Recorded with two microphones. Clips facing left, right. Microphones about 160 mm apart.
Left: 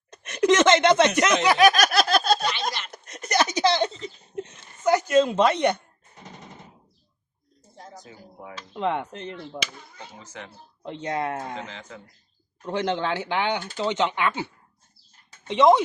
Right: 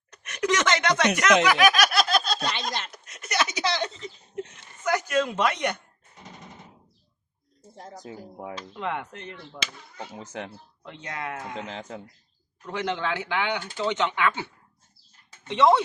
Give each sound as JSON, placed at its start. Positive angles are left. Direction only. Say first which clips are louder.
{"t": 0.1, "sound": "snicker", "louder": "left 6 dB", "side_deg": 30}
{"t": 2.9, "sound": "a sound", "louder": "left 5 dB", "side_deg": 40}
{"t": 8.7, "sound": "speech", "louder": "left 7 dB", "side_deg": 25}
{"t": 10.2, "sound": "speech", "louder": "right 6 dB", "side_deg": -55}
{"t": 10.8, "sound": "speech", "louder": "left 7 dB", "side_deg": 30}
{"t": 11.7, "sound": "speech", "louder": "right 5 dB", "side_deg": -40}
{"t": 12.6, "sound": "speech", "louder": "left 3 dB", "side_deg": 25}
{"t": 15.4, "sound": "speech", "louder": "left 3 dB", "side_deg": 20}